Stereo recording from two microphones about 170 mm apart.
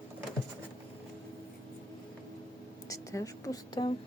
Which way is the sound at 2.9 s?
20° left (ahead or behind).